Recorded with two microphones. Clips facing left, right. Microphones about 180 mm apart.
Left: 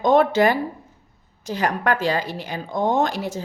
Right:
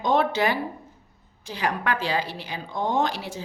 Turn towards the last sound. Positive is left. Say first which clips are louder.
# left 4 dB
turn(degrees=45)  # may be behind; listen again after turning